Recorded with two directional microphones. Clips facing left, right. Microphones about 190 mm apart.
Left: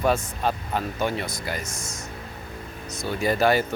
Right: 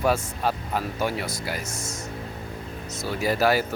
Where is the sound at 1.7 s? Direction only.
25° right (ahead or behind).